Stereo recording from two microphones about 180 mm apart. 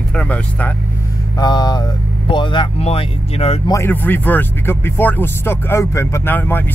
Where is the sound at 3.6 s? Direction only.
15° left (ahead or behind).